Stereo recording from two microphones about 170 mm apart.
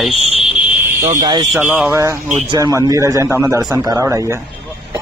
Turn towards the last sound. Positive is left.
turn(degrees=-15)  # may be behind; listen again after turning